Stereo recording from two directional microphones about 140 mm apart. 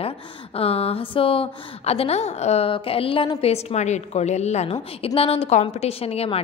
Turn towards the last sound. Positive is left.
turn(degrees=45)  # may be behind; listen again after turning